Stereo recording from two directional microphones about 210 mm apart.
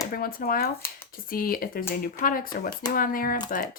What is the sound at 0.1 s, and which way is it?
A woman's voice, 45° left (ahead or behind).